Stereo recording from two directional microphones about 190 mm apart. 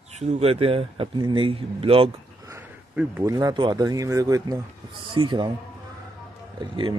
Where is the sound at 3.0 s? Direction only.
15° right (ahead or behind).